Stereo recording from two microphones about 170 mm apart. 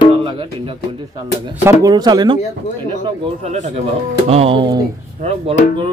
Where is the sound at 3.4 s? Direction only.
40° right (ahead or behind).